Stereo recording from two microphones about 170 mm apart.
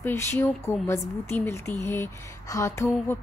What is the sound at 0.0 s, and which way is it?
A woman's voice, 10° left (ahead or behind).